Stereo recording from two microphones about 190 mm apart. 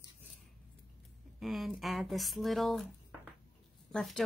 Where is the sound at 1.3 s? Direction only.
Centre (ahead or behind).